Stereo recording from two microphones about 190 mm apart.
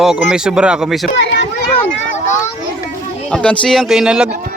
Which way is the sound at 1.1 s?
65° left (ahead or behind).